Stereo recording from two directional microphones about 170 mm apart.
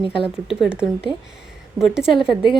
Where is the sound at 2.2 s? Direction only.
5° right (ahead or behind).